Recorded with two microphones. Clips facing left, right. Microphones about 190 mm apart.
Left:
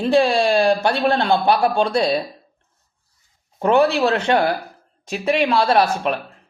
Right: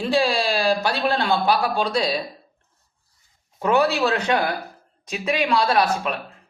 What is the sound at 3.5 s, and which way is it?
Speech, 25° left (ahead or behind).